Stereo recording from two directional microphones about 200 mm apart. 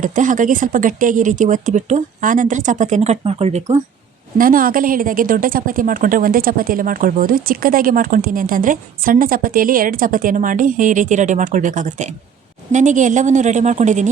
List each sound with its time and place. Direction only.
0.0 s speech: 40° right (ahead or behind)
4.4 s a woman's voice: 45° right (ahead or behind)